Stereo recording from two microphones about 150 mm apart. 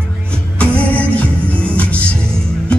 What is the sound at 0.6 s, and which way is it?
Music, 10° left (ahead or behind).